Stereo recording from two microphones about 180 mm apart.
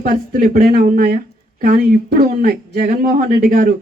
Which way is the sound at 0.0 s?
55° right (ahead or behind).